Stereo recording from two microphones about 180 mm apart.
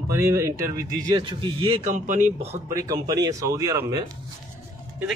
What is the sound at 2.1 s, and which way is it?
Speech, 45° right (ahead or behind).